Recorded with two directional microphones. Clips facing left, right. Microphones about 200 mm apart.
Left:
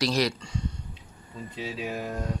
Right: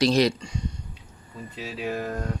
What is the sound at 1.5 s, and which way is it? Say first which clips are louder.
Speech: right 3 dB; 15° left (ahead or behind).